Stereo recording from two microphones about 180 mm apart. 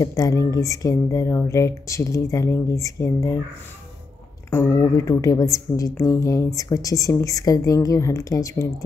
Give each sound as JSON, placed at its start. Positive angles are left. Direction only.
{"t": 0.0, "sound": "speech", "side_deg": 20}
{"t": 4.5, "sound": "speech", "side_deg": 15}